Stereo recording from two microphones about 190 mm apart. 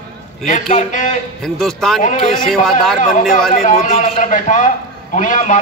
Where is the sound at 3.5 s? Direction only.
45° left (ahead or behind).